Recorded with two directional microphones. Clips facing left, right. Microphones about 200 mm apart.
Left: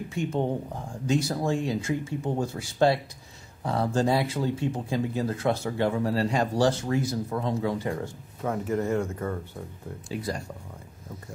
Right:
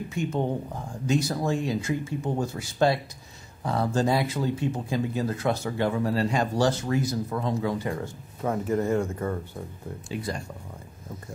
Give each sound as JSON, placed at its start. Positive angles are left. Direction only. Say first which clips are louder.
{"t": 0.1, "sound": "speech", "louder": "even", "side_deg": 30}
{"t": 8.4, "sound": "speech", "louder": "right 2 dB", "side_deg": -30}
{"t": 10.0, "sound": "speech", "louder": "left 1 dB", "side_deg": 40}